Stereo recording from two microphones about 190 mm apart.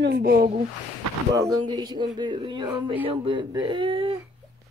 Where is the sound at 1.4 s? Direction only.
20° right (ahead or behind).